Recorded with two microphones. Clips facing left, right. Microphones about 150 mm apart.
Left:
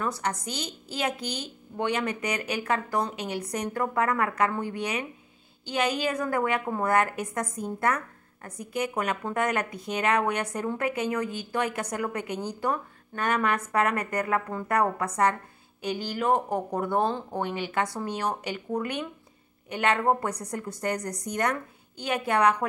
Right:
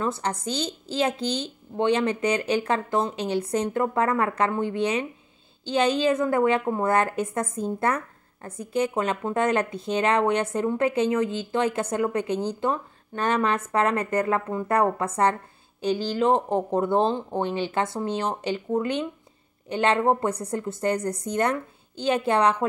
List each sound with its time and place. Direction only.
0.0 s a woman's voice: 25° right (ahead or behind)